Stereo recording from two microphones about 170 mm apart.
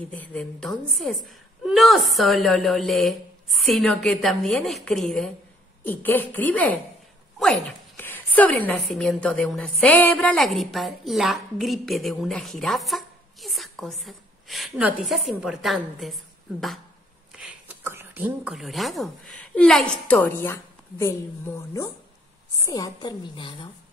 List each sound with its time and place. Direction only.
0.0 s a woman's voice: 10° left (ahead or behind)
17.3 s a sound: 5° right (ahead or behind)
17.8 s a woman's voice: 10° right (ahead or behind); by 23.7 s 30° left (ahead or behind)